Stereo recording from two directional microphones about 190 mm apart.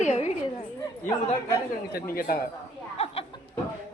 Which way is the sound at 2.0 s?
50° left (ahead or behind).